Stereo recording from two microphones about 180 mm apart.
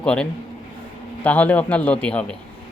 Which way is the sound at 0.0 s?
5° left (ahead or behind).